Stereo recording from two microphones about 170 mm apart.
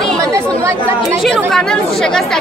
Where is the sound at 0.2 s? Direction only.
20° right (ahead or behind).